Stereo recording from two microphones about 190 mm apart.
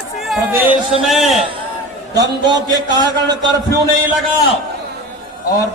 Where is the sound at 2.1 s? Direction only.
20° right (ahead or behind).